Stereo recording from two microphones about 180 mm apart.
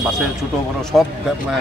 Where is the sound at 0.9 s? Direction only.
Centre (ahead or behind).